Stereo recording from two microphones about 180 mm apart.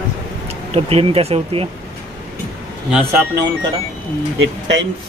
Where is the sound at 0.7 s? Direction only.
35° right (ahead or behind).